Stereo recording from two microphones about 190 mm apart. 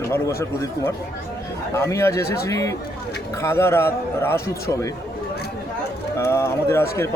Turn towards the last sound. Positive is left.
turn(degrees=15)  # may be behind; listen again after turning